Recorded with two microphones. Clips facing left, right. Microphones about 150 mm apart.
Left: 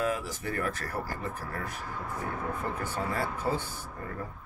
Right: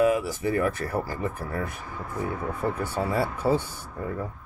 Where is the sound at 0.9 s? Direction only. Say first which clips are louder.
Right 6 dB; 55° right (ahead or behind).